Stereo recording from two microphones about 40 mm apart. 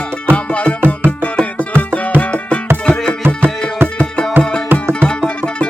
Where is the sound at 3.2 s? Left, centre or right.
Right.